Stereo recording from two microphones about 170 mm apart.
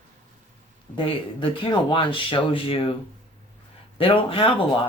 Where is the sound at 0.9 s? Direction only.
30° left (ahead or behind).